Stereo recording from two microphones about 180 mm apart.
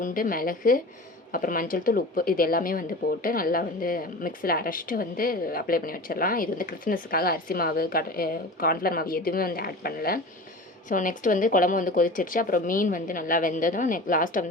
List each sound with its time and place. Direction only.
0.0 s a woman's voice: 50° left (ahead or behind)